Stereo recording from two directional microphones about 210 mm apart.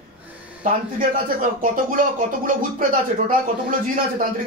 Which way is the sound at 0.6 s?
40° right (ahead or behind).